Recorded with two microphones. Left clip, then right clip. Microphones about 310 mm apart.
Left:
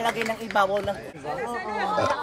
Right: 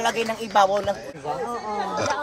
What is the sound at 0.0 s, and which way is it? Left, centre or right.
Speech, right.